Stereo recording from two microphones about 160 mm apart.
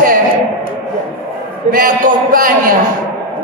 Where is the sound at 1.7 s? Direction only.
60° right (ahead or behind).